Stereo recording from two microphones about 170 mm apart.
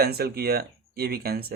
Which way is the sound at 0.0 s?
65° right (ahead or behind).